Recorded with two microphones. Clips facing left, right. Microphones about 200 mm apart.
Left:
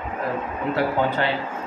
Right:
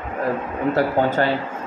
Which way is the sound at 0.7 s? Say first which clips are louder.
Right 3 dB; 45° right (ahead or behind).